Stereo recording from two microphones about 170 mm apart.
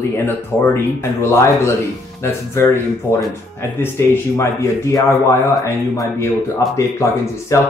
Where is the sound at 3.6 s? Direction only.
15° left (ahead or behind).